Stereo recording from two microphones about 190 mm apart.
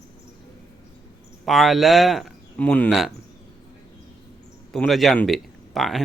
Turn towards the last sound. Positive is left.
turn(degrees=0)  # may be behind; listen again after turning